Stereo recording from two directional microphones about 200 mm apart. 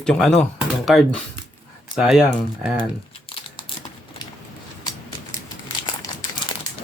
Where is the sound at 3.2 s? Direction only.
25° left (ahead or behind).